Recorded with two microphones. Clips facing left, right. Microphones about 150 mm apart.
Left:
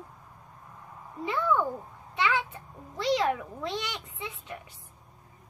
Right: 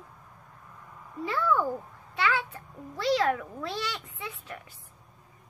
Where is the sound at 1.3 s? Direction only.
20° left (ahead or behind).